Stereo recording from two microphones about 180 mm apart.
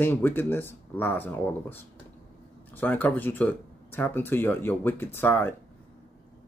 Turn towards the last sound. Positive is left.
turn(degrees=10)  # may be behind; listen again after turning